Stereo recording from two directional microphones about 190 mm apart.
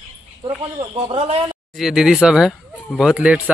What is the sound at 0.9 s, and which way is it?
Speech, 30° right (ahead or behind).